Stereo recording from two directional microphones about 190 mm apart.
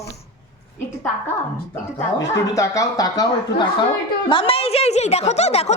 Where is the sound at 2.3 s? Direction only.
15° left (ahead or behind).